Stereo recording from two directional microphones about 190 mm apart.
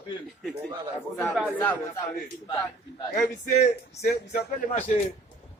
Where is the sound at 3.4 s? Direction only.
40° left (ahead or behind).